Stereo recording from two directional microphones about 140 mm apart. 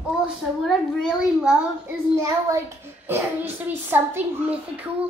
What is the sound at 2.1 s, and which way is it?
A child's voice, 20° right (ahead or behind).